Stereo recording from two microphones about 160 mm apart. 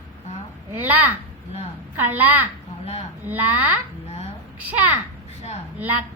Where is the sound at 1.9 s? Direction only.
10° right (ahead or behind).